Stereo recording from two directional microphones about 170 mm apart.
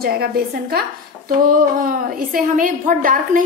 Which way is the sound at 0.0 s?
65° right (ahead or behind).